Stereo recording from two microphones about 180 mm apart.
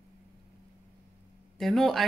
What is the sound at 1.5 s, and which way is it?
Speech, centre (ahead or behind).